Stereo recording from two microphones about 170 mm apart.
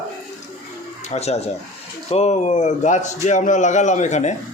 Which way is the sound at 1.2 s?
40° left (ahead or behind).